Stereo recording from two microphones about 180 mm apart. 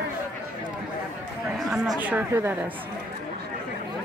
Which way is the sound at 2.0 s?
10° right (ahead or behind).